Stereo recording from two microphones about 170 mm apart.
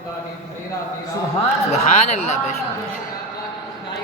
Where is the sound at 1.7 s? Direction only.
40° left (ahead or behind).